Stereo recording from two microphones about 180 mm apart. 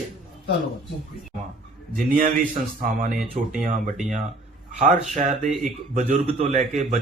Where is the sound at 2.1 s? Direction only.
50° right (ahead or behind).